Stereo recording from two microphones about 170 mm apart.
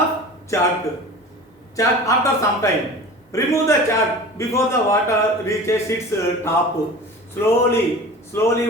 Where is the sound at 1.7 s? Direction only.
20° left (ahead or behind).